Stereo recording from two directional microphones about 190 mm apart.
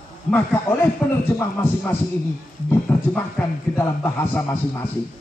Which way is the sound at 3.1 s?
10° left (ahead or behind).